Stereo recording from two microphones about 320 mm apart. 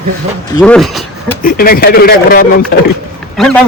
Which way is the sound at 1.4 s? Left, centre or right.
Left.